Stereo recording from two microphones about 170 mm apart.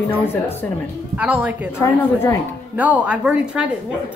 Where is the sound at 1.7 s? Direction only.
15° left (ahead or behind).